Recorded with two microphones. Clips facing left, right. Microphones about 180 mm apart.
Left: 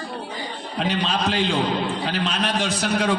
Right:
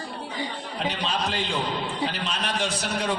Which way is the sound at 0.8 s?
90° left.